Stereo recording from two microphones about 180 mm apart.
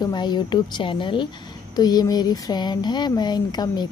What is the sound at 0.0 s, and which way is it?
Speech, 25° left (ahead or behind).